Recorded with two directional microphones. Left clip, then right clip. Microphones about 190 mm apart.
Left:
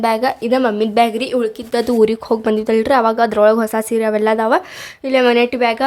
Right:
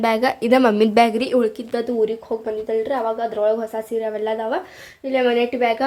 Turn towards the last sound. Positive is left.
turn(degrees=20)  # may be behind; listen again after turning